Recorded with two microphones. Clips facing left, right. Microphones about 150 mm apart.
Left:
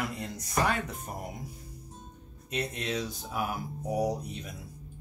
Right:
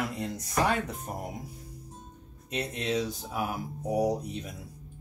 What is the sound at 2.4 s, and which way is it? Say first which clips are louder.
Speech: right 2 dB; 30° right (ahead or behind).